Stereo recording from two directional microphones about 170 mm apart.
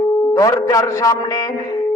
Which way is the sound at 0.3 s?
20° left (ahead or behind).